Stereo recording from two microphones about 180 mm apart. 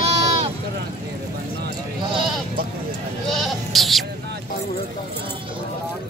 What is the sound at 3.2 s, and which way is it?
Goat, centre (ahead or behind).